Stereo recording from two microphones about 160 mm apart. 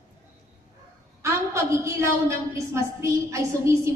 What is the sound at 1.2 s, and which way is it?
A woman's voice, 15° right (ahead or behind).